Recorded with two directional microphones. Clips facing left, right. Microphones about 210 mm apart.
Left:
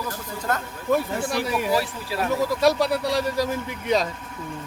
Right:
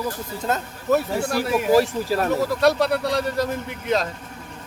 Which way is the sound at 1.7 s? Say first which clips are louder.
Right 7 dB; 45° right (ahead or behind).